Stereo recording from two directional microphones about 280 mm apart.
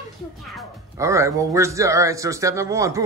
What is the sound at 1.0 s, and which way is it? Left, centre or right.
A man's voice, centre.